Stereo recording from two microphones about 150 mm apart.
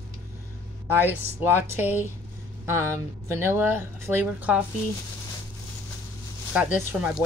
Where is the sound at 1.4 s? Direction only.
15° right (ahead or behind).